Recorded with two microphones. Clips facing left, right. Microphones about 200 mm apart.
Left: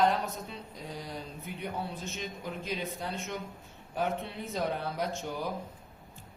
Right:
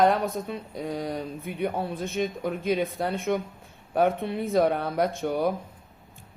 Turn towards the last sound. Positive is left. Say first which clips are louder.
# right 9 dB
turn(degrees=-60)  # may be behind; listen again after turning